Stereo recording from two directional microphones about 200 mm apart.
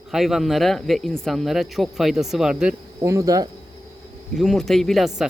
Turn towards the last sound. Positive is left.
turn(degrees=0)  # may be behind; listen again after turning